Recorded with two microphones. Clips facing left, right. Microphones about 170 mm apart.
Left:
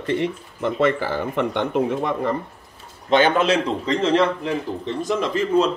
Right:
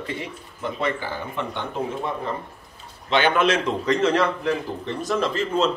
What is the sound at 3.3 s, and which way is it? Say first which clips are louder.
A man's voice: left 2 dB; 30° left (ahead or behind).